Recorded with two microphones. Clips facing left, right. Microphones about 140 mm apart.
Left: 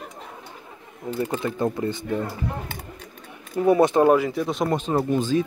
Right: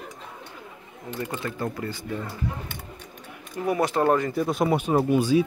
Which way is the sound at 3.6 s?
25° left (ahead or behind).